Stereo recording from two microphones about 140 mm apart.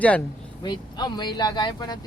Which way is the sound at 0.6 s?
30° left (ahead or behind).